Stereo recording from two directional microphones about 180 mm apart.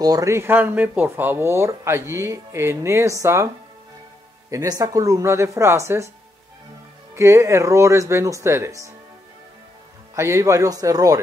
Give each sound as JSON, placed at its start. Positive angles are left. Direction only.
{"t": 0.0, "sound": "speech", "side_deg": -20}
{"t": 4.5, "sound": "speech", "side_deg": -20}
{"t": 7.2, "sound": "speech", "side_deg": -15}
{"t": 10.1, "sound": "speech", "side_deg": -15}